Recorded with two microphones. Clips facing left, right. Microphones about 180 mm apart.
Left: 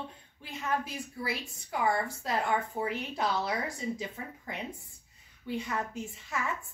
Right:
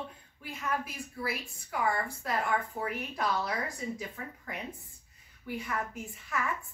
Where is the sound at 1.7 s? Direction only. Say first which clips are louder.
Left 2 dB; 25° left (ahead or behind).